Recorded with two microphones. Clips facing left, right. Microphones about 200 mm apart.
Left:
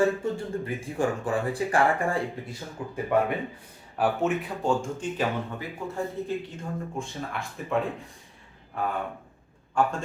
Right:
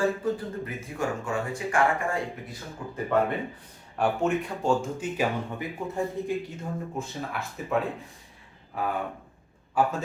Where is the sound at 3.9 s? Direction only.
Centre (ahead or behind).